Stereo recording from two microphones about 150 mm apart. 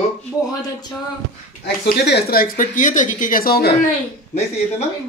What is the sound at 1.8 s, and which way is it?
Speech, 90° left.